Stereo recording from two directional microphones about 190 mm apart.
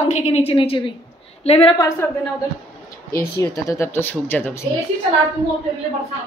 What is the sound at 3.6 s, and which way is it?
Speech, 15° left (ahead or behind).